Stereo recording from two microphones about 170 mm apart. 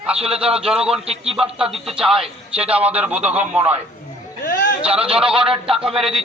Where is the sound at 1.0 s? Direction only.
35° right (ahead or behind).